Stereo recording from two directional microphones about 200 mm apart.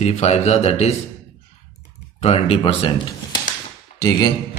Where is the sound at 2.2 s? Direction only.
30° left (ahead or behind).